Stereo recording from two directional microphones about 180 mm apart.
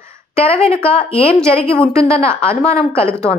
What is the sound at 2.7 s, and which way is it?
Speech, 35° left (ahead or behind).